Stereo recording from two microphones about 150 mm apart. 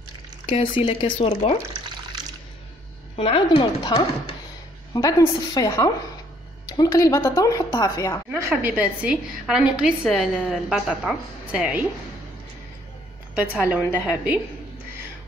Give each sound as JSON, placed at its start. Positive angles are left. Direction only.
{"t": 0.5, "sound": "speech", "side_deg": 35}
{"t": 3.2, "sound": "speech", "side_deg": 40}
{"t": 4.9, "sound": "speech", "side_deg": 25}
{"t": 8.3, "sound": "a woman's voice", "side_deg": -15}
{"t": 13.3, "sound": "a woman's voice", "side_deg": -10}